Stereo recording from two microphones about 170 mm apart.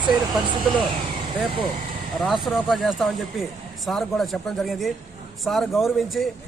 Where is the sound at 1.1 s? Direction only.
30° right (ahead or behind).